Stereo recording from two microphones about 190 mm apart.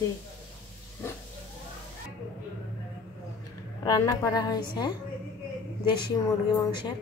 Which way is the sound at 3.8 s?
20° left (ahead or behind).